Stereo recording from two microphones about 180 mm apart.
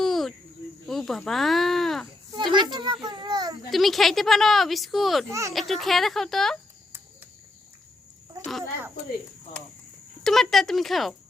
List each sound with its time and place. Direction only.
0.0 s cricket: centre (ahead or behind)
0.9 s speech: centre (ahead or behind)
2.3 s children playing: 25° right (ahead or behind)
2.7 s a sound: 25° right (ahead or behind)
3.7 s speech: centre (ahead or behind)
5.3 s a child's voice: 15° right (ahead or behind)
5.5 s speech: centre (ahead or behind)
10.2 s speech: centre (ahead or behind)